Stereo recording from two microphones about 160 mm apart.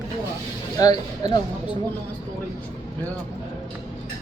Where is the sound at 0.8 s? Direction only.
25° left (ahead or behind).